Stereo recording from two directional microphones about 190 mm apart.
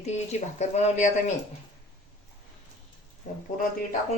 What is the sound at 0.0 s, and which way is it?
Speech, 35° left (ahead or behind).